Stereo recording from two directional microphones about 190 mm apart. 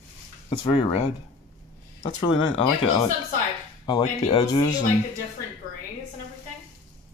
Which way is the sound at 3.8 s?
25° left (ahead or behind).